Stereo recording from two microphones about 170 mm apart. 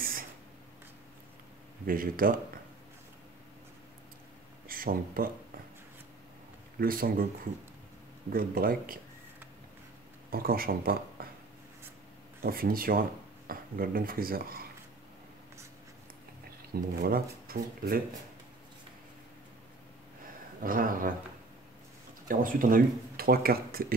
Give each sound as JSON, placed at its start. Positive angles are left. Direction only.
{"t": 1.9, "sound": "speech", "side_deg": -55}
{"t": 4.6, "sound": "speech", "side_deg": -55}
{"t": 6.8, "sound": "speech", "side_deg": -60}
{"t": 8.3, "sound": "speech", "side_deg": -55}
{"t": 10.3, "sound": "speech", "side_deg": -60}
{"t": 12.4, "sound": "speech", "side_deg": -60}
{"t": 16.7, "sound": "speech", "side_deg": -60}
{"t": 20.6, "sound": "speech", "side_deg": -55}
{"t": 22.3, "sound": "speech", "side_deg": -55}